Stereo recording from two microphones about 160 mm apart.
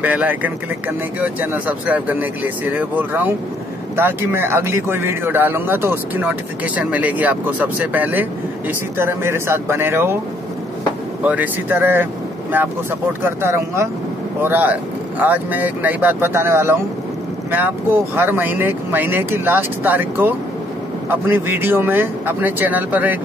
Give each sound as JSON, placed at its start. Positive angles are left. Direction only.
{"t": 0.0, "sound": "a man's voice", "side_deg": -10}
{"t": 11.2, "sound": "a man's voice", "side_deg": -10}
{"t": 13.2, "sound": "a man's voice", "side_deg": -15}